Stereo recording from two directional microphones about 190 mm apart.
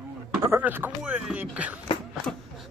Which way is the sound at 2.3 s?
5° left (ahead or behind).